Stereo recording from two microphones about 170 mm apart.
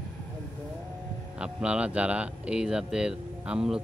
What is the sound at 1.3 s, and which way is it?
Speech, 5° right (ahead or behind).